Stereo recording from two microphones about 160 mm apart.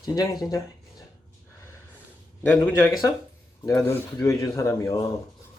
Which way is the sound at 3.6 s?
20° left (ahead or behind).